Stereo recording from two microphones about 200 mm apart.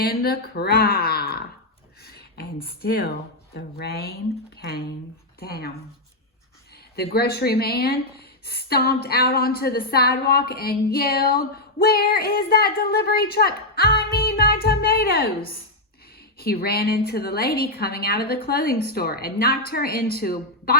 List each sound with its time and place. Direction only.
0.0 s a woman's voice: 50° left (ahead or behind)
5.4 s a woman's voice: 50° left (ahead or behind)
6.9 s a woman's voice: 50° left (ahead or behind)
16.4 s a woman's voice: 50° left (ahead or behind)